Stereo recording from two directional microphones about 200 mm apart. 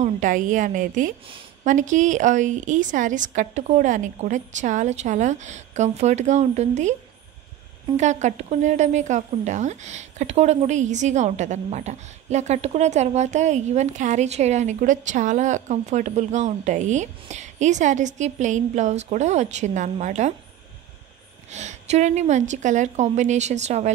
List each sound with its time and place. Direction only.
0.0 s a woman's voice: 40° right (ahead or behind)
21.5 s a woman's voice: 35° right (ahead or behind)